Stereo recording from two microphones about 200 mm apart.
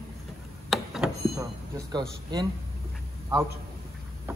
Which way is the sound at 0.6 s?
Centre (ahead or behind).